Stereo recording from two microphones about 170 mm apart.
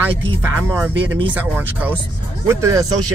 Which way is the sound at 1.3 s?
10° right (ahead or behind).